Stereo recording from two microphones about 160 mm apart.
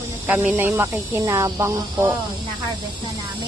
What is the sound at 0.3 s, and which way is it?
Speech, 10° right (ahead or behind).